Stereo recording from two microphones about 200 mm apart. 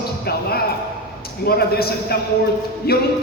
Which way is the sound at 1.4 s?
50° left (ahead or behind).